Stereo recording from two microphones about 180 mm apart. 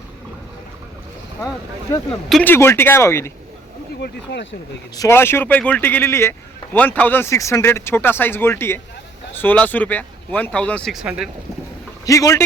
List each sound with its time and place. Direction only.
2.3 s speech: 10° left (ahead or behind)
4.0 s speech: 70° left (ahead or behind)
4.9 s speech: 15° left (ahead or behind); by 11.3 s 5° right (ahead or behind)
12.0 s speech: 15° left (ahead or behind)